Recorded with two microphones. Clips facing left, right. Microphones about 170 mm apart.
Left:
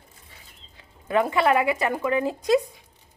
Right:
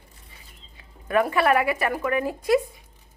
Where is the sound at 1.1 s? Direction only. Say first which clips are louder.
Even; 20° left (ahead or behind).